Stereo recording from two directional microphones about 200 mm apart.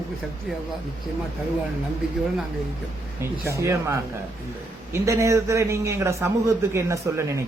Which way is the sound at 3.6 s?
15° right (ahead or behind).